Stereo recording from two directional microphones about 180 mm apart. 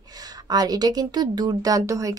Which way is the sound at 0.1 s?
20° right (ahead or behind).